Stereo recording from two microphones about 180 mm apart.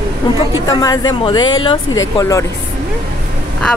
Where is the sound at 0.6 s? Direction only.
20° left (ahead or behind).